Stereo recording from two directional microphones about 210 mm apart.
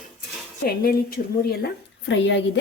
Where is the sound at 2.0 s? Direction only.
60° left (ahead or behind).